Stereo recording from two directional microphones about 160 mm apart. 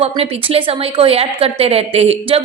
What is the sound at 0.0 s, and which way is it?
A woman's voice, 40° right (ahead or behind).